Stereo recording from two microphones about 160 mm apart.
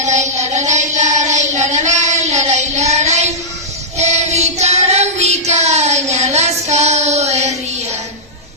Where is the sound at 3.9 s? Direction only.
45° right (ahead or behind).